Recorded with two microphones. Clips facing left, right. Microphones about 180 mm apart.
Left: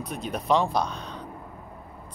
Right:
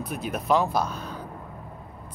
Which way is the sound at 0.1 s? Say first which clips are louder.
Even; 5° right (ahead or behind).